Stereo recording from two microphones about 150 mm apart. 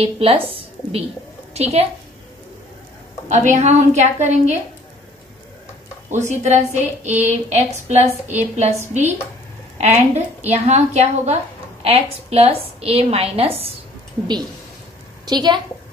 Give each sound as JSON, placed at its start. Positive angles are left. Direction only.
{"t": 0.0, "sound": "a woman's voice", "side_deg": -40}
{"t": 3.3, "sound": "a woman's voice", "side_deg": -50}
{"t": 6.1, "sound": "a woman's voice", "side_deg": -50}
{"t": 15.2, "sound": "a woman's voice", "side_deg": -30}